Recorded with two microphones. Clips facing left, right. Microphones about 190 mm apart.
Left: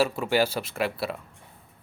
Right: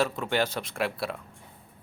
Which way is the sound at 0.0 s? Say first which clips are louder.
Left 3 dB; 5° left (ahead or behind).